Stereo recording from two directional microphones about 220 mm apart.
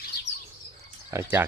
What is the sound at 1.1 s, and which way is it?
Speech, 10° right (ahead or behind).